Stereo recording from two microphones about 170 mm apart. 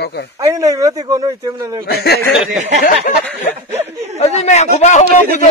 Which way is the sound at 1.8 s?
70° left (ahead or behind).